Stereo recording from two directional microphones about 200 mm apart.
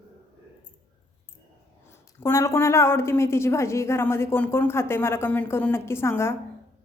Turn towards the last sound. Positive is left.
turn(degrees=15)  # may be behind; listen again after turning